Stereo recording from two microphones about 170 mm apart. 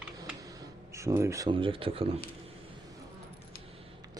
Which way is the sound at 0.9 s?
15° right (ahead or behind).